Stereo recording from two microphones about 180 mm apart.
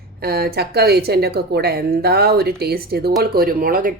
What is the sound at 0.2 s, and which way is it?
A woman's voice, 60° right (ahead or behind).